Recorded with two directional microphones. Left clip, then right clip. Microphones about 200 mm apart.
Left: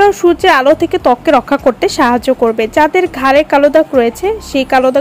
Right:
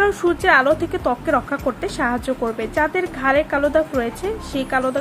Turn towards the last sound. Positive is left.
turn(degrees=35)  # may be behind; listen again after turning